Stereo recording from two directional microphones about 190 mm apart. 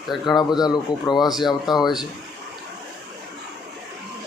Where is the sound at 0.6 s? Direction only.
20° left (ahead or behind).